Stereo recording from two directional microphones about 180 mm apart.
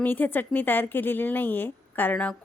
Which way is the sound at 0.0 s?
10° left (ahead or behind).